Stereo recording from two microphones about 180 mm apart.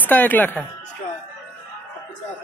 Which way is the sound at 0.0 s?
10° left (ahead or behind).